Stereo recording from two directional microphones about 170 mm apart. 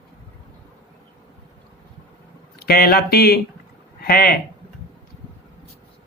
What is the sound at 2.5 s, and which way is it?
Speech, 65° left (ahead or behind).